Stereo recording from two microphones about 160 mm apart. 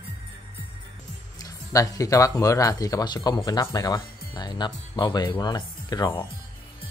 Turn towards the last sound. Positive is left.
turn(degrees=25)  # may be behind; listen again after turning